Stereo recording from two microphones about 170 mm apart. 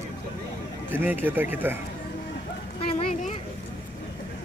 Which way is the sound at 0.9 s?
10° right (ahead or behind).